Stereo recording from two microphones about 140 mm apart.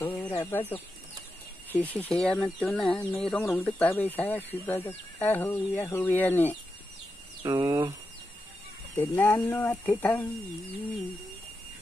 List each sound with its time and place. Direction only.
0.0 s chicken: 25° left (ahead or behind)
0.3 s speech: 15° left (ahead or behind)
7.4 s speech: 20° right (ahead or behind)
8.9 s speech: 15° left (ahead or behind)